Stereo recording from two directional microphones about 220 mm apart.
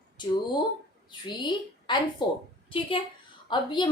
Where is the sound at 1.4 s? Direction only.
20° left (ahead or behind).